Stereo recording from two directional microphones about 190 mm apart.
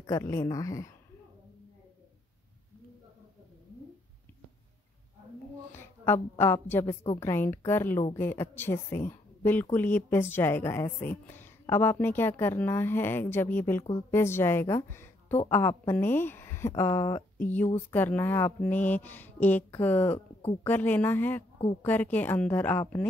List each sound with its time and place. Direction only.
0.0 s speech: 15° left (ahead or behind)
5.7 s a woman's voice: 10° left (ahead or behind)